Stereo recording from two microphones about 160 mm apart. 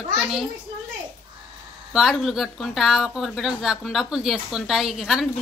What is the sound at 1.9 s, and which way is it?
Speech, centre (ahead or behind).